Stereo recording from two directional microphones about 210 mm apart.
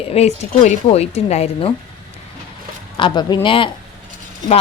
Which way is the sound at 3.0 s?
20° left (ahead or behind).